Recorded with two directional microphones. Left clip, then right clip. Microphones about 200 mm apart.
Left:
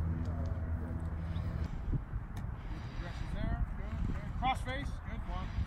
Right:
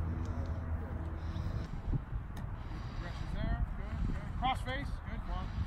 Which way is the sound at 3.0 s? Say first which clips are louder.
Even; 5° right (ahead or behind).